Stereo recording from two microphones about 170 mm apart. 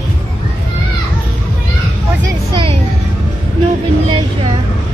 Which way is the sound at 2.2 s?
30° right (ahead or behind).